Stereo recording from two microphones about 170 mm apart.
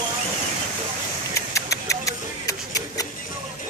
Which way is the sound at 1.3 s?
20° left (ahead or behind).